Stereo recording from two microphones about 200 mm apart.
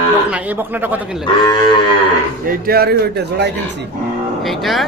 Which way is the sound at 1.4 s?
20° left (ahead or behind).